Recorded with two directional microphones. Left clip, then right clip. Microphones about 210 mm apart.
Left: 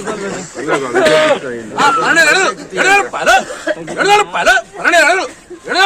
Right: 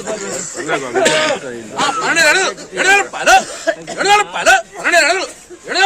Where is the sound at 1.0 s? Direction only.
35° right (ahead or behind).